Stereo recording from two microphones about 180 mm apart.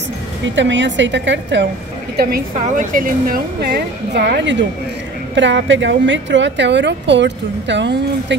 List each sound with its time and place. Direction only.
0.6 s a woman's voice: 90° right
2.6 s speech: 45° right (ahead or behind); by 4.6 s 70° right (ahead or behind)
5.3 s a woman's voice: 90° right